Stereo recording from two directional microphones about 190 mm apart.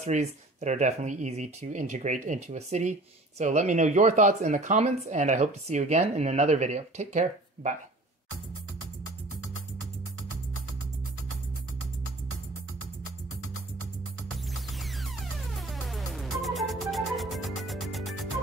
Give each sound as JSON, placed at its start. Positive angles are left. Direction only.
{"t": 0.0, "sound": "speech", "side_deg": -35}
{"t": 14.3, "sound": "music", "side_deg": 0}